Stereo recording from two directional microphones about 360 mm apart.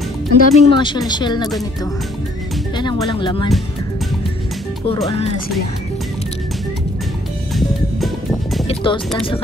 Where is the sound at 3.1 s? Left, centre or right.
Centre.